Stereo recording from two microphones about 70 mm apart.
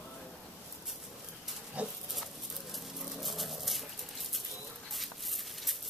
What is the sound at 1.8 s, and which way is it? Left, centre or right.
Dog, centre.